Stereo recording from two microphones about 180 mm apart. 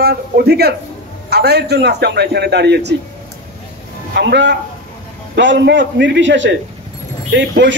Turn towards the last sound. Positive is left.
turn(degrees=-75)  # may be behind; listen again after turning